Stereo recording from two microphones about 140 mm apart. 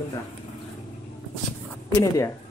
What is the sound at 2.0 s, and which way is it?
Speech, 20° left (ahead or behind).